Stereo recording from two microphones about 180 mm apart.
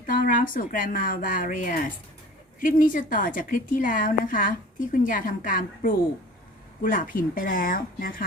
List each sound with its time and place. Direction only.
0.3 s a woman's voice: 50° left (ahead or behind)